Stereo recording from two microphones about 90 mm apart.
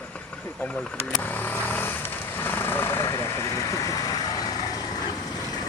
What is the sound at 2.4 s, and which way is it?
Vehicle, 25° left (ahead or behind).